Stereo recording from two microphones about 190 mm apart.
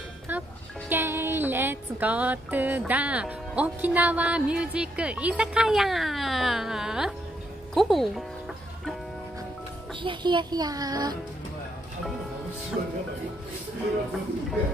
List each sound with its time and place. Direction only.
0.3 s music: 10° right (ahead or behind)
7.7 s speech: centre (ahead or behind)
10.0 s speech: 25° right (ahead or behind)